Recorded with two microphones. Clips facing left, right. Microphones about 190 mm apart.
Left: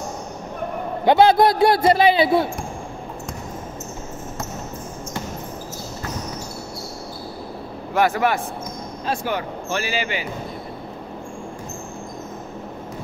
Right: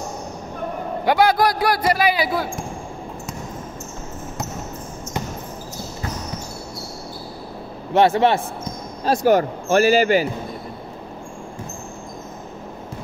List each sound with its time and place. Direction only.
1.0 s a man's voice: 25° left (ahead or behind)
7.9 s a man's voice: 25° right (ahead or behind)
9.0 s speech: 40° right (ahead or behind)